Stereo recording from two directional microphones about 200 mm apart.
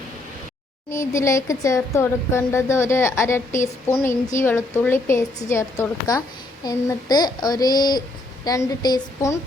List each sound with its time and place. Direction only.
0.9 s speech: 15° left (ahead or behind)
6.7 s child singing: 20° left (ahead or behind)
8.4 s speech: 20° left (ahead or behind)